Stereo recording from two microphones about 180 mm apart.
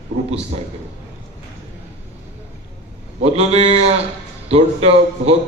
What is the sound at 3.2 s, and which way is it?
A man's voice, 35° right (ahead or behind).